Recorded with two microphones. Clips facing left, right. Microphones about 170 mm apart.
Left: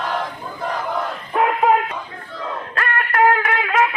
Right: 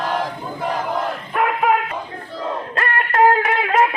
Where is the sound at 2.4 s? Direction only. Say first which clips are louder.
Right 2 dB; 25° right (ahead or behind).